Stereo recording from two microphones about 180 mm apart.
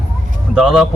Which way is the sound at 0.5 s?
Centre (ahead or behind).